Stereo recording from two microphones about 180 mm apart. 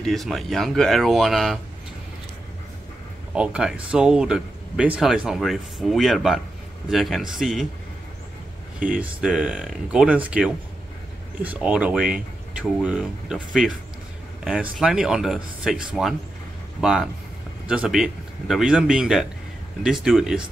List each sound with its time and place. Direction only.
0.0 s speech: centre (ahead or behind)
3.3 s speech: 5° right (ahead or behind)
8.7 s speech: 50° right (ahead or behind)
9.0 s speech: 5° right (ahead or behind)